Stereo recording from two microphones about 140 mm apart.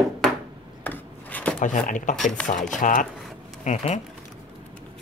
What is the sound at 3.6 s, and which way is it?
Speech, 55° left (ahead or behind).